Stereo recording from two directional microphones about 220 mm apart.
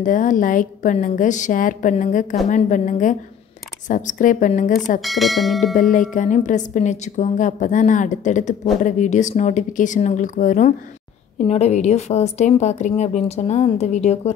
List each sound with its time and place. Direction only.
0.0 s a woman's voice: 35° left (ahead or behind)
5.0 s speech: centre (ahead or behind)
5.8 s a woman's voice: 35° left (ahead or behind)